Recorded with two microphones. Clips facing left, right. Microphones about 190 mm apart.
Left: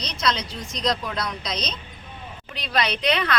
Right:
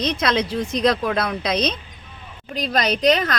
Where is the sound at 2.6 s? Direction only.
45° right (ahead or behind).